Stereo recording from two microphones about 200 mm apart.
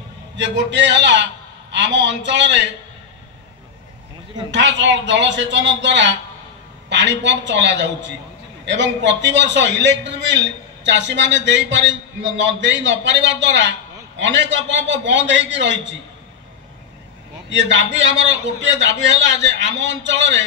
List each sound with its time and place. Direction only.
0.4 s a man's voice: 60° right (ahead or behind)
4.5 s a man's voice: 65° right (ahead or behind)
17.5 s a man's voice: 65° right (ahead or behind)